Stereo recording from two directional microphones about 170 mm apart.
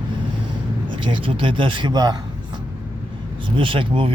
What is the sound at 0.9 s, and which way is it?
A man's voice, 30° right (ahead or behind).